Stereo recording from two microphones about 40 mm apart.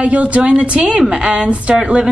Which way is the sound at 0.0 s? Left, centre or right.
Right.